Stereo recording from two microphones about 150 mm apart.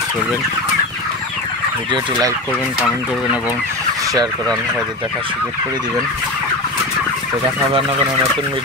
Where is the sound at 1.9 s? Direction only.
30° right (ahead or behind).